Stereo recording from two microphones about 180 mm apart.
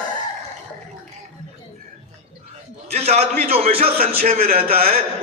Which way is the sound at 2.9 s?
35° right (ahead or behind).